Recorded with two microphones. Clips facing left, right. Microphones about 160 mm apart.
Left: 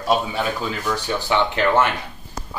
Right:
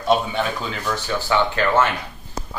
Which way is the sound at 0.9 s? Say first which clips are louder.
Right 1 dB; 20° left (ahead or behind).